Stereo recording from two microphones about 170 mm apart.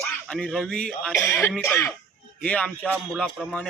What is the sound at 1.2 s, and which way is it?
Speech, 15° left (ahead or behind).